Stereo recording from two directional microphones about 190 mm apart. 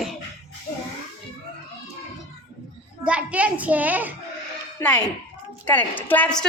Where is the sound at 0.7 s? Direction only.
45° left (ahead or behind).